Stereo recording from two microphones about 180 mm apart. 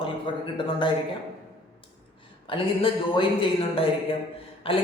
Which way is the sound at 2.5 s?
30° left (ahead or behind).